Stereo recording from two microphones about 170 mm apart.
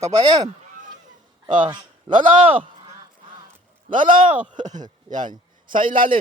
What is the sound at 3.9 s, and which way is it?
A man's voice, 50° right (ahead or behind).